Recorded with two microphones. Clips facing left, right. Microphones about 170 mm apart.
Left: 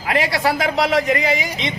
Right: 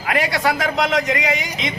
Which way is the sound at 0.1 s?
30° left (ahead or behind).